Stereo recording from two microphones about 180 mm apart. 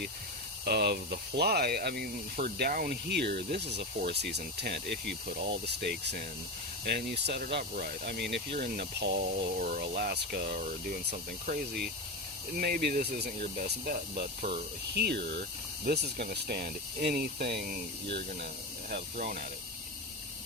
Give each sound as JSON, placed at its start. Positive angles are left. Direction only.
{"t": 0.6, "sound": "speech", "side_deg": -65}
{"t": 8.5, "sound": "speech", "side_deg": -55}
{"t": 9.6, "sound": "speech", "side_deg": -50}
{"t": 14.9, "sound": "speech", "side_deg": -65}
{"t": 18.9, "sound": "speech", "side_deg": -50}